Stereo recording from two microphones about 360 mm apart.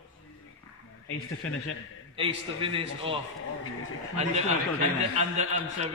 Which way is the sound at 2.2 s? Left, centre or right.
Centre.